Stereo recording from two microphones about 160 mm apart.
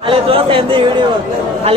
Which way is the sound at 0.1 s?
35° right (ahead or behind).